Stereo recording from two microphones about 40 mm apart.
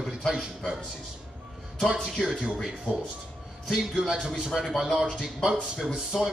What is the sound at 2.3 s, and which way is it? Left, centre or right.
Speech, centre.